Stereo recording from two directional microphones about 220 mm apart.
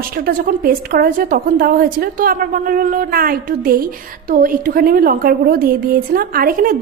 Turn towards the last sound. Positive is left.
turn(degrees=-40)  # may be behind; listen again after turning